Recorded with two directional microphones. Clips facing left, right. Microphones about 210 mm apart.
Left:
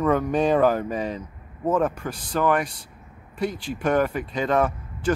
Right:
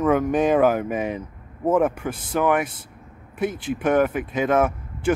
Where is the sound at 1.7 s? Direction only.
10° right (ahead or behind).